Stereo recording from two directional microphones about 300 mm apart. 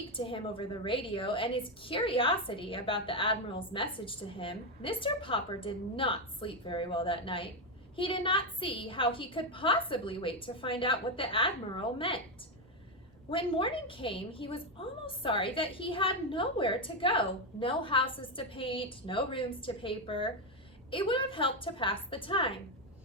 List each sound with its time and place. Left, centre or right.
0.1 s a woman's voice: centre
13.3 s a woman's voice: centre